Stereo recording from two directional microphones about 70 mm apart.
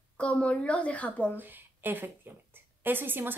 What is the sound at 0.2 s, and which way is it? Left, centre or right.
A woman's voice, centre.